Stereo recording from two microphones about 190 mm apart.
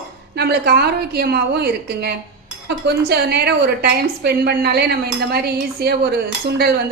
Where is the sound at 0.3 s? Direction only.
55° right (ahead or behind).